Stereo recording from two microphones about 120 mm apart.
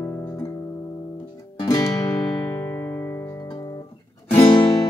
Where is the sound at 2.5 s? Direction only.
25° left (ahead or behind).